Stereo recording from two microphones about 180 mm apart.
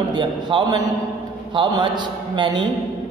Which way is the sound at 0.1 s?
25° right (ahead or behind).